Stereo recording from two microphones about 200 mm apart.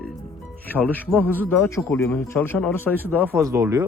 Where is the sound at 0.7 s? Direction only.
10° left (ahead or behind).